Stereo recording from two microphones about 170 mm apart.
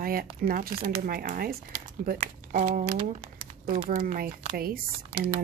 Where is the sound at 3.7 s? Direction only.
45° right (ahead or behind); by 5.2 s 60° right (ahead or behind).